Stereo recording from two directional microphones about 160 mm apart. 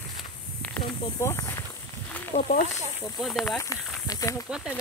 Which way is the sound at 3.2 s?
Centre (ahead or behind).